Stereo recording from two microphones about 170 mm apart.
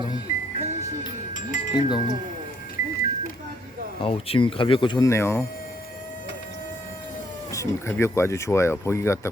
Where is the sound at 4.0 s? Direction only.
35° left (ahead or behind); by 5.4 s 15° left (ahead or behind).